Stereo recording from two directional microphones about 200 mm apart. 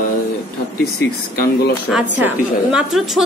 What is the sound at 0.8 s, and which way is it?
Speech, 50° left (ahead or behind).